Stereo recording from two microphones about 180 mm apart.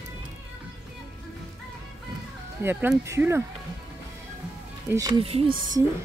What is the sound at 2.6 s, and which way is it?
Speech, 10° right (ahead or behind).